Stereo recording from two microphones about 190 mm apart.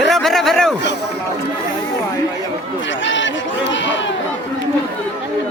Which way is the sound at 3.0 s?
75° left (ahead or behind).